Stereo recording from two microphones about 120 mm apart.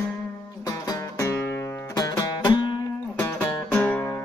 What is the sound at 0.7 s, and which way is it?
Music, 30° left (ahead or behind).